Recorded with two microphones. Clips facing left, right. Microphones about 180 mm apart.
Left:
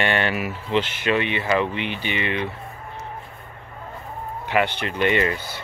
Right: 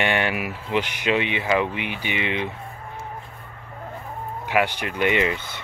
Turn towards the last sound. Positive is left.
turn(degrees=-15)  # may be behind; listen again after turning